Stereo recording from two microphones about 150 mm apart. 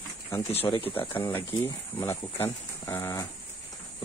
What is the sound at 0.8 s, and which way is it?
Speech, 15° left (ahead or behind).